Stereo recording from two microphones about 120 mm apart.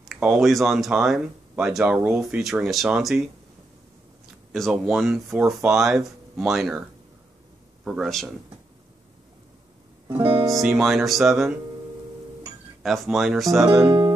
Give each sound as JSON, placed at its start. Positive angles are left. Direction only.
{"t": 0.4, "sound": "speech", "side_deg": 0}
{"t": 4.5, "sound": "speech", "side_deg": 0}
{"t": 7.8, "sound": "speech", "side_deg": 0}
{"t": 10.0, "sound": "speech", "side_deg": -20}
{"t": 10.8, "sound": "speech", "side_deg": 0}
{"t": 12.8, "sound": "speech", "side_deg": 0}
{"t": 13.8, "sound": "speech", "side_deg": -40}